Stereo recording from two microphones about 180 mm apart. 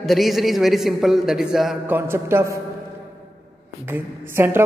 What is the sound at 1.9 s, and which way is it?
Speech, 15° right (ahead or behind).